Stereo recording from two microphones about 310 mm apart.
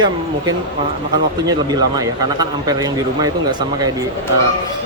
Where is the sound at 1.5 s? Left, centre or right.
Centre.